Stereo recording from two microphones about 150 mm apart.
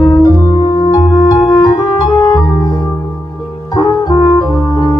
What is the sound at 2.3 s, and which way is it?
Music, 20° left (ahead or behind).